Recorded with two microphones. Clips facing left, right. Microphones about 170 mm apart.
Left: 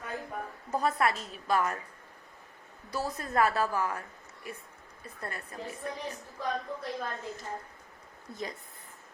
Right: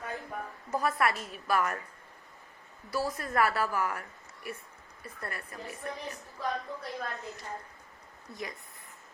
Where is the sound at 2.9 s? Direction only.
20° left (ahead or behind).